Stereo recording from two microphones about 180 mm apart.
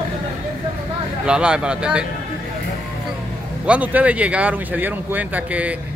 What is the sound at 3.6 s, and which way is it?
Speech, 5° right (ahead or behind).